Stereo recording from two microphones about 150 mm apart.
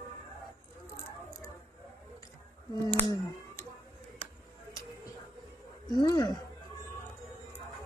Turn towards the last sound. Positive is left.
turn(degrees=30)  # may be behind; listen again after turning